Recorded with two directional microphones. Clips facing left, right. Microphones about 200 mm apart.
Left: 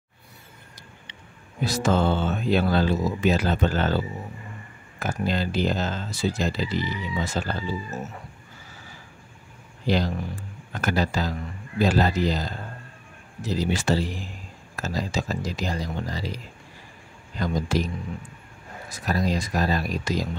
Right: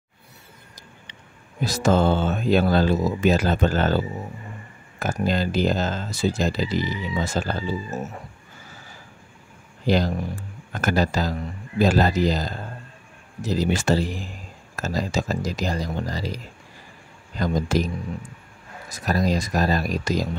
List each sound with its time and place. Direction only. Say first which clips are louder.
1.6 s speech: right 3 dB; 45° right (ahead or behind)
9.8 s speech: right 3 dB; 45° right (ahead or behind)
17.4 s speech: right 3 dB; 45° right (ahead or behind)
18.9 s speech: right 3 dB; 40° right (ahead or behind)